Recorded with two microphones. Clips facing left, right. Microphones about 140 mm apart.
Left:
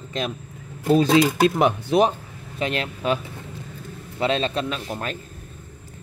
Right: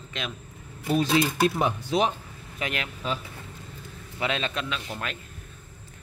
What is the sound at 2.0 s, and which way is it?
Speech, 30° left (ahead or behind).